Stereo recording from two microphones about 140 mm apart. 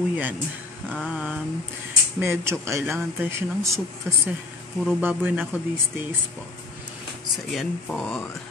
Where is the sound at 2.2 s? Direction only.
20° right (ahead or behind).